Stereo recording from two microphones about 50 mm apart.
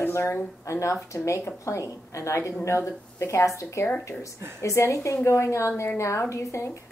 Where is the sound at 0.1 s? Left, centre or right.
Left.